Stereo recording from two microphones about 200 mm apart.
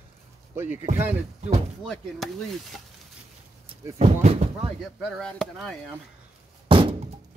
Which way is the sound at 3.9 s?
30° right (ahead or behind).